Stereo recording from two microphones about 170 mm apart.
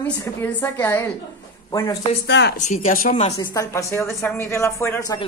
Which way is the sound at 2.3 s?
90° left.